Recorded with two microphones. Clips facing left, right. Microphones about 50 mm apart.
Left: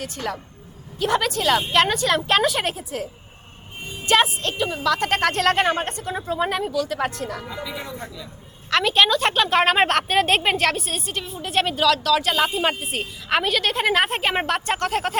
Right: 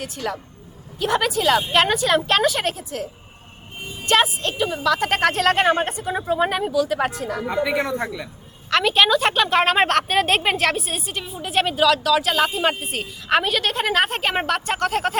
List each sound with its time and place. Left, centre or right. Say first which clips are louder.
0.2 s a woman's voice: right 1 dB; centre
7.4 s speech: right 10 dB; right
8.7 s a woman's voice: right 1 dB; centre